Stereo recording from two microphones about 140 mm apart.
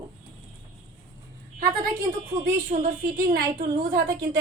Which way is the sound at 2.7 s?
80° right.